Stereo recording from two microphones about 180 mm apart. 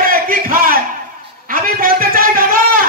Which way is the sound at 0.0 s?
50° right (ahead or behind).